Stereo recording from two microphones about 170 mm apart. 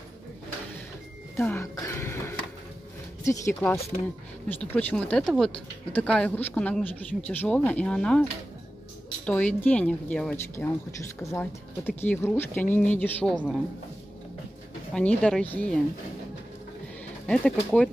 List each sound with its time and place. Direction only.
1.3 s a sound: 15° left (ahead or behind)
3.3 s a woman's voice: 15° left (ahead or behind)
15.0 s a woman's voice: 5° left (ahead or behind)
17.3 s a woman's voice: 5° left (ahead or behind)